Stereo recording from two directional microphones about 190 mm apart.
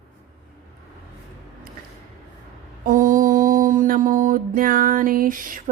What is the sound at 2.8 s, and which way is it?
Mantra, 45° right (ahead or behind).